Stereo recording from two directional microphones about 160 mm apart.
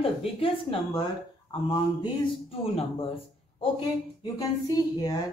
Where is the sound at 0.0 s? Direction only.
35° left (ahead or behind).